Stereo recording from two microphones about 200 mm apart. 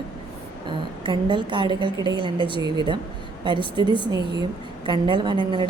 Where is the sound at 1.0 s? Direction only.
25° right (ahead or behind).